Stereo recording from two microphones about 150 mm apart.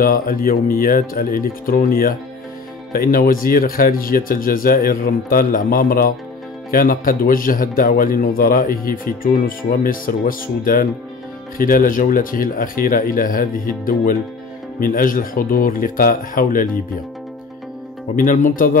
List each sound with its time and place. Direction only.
0.0 s a man's voice: 75° left (ahead or behind)
18.1 s speech: 65° left (ahead or behind)